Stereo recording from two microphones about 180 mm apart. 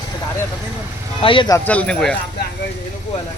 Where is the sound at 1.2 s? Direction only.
30° left (ahead or behind).